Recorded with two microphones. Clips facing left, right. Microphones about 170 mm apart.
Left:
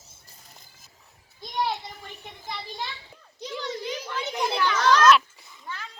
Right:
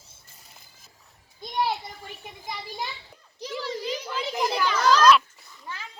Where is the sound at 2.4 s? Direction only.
10° right (ahead or behind).